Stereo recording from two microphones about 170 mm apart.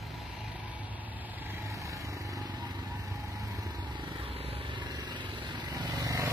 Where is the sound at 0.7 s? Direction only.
10° right (ahead or behind).